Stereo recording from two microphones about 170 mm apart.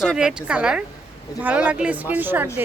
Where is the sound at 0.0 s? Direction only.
5° right (ahead or behind).